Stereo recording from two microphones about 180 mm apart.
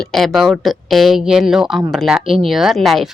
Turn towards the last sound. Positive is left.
turn(degrees=0)  # may be behind; listen again after turning